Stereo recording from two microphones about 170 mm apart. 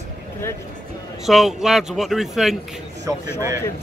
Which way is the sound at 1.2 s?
Centre (ahead or behind).